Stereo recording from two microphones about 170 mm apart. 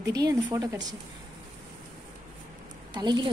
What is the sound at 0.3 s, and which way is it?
Speech, 20° right (ahead or behind).